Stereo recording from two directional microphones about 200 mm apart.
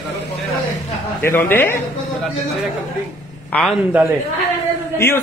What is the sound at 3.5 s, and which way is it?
Speech, 5° left (ahead or behind).